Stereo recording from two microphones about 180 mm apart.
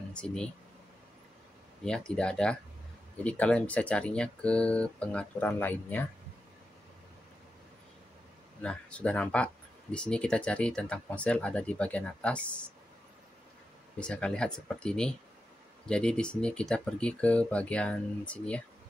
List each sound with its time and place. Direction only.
0.1 s speech: 5° left (ahead or behind)
1.9 s speech: 5° left (ahead or behind)
8.6 s speech: 5° left (ahead or behind)
13.9 s speech: 5° left (ahead or behind)